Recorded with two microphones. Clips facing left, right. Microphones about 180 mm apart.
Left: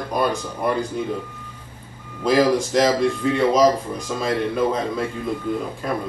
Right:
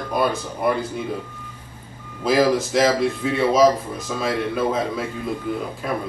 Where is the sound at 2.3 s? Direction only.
5° right (ahead or behind).